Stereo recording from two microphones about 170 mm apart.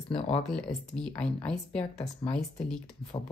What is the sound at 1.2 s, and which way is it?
Speech, 5° left (ahead or behind).